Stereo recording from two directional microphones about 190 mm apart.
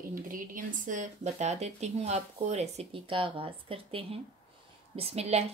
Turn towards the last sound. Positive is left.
turn(degrees=-35)  # may be behind; listen again after turning